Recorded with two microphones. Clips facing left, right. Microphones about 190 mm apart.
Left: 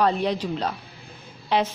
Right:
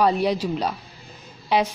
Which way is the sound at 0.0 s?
10° right (ahead or behind).